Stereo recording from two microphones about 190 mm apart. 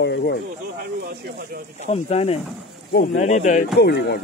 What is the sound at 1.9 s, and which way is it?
Speech, 35° left (ahead or behind).